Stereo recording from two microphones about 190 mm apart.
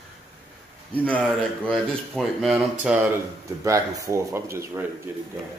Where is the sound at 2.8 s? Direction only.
10° right (ahead or behind).